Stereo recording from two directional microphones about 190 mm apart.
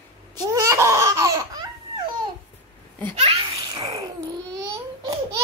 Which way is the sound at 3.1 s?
30° right (ahead or behind).